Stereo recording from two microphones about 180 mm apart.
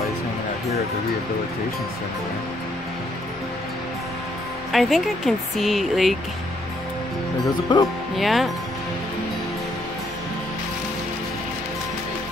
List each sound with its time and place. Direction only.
4.7 s speech: centre (ahead or behind)
7.7 s speech: 25° left (ahead or behind)
8.2 s speech: centre (ahead or behind)